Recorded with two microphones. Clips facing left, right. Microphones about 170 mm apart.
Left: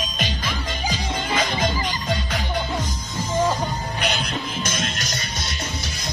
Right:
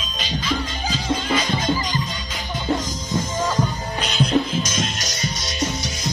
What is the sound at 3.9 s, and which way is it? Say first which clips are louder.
Music: right 10 dB; 60° left (ahead or behind).